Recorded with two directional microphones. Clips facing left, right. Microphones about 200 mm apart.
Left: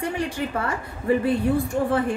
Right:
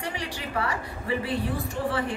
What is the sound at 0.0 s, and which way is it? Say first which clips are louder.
A woman's voice: left 7 dB; 50° left (ahead or behind).